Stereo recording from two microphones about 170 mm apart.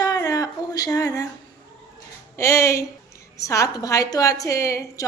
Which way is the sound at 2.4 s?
15° left (ahead or behind).